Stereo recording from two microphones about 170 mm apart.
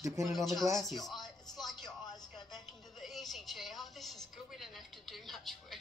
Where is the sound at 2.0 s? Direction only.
25° left (ahead or behind).